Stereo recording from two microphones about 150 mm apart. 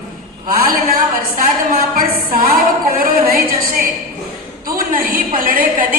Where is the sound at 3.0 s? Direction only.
70° right (ahead or behind).